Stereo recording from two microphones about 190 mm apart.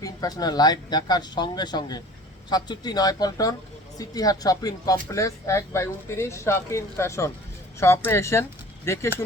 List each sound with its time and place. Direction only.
0.0 s speech: 20° left (ahead or behind)